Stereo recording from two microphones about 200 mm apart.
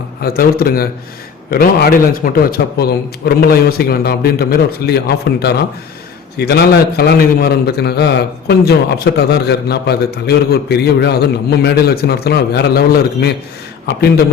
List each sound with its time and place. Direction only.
0.2 s a man's voice: 50° left (ahead or behind)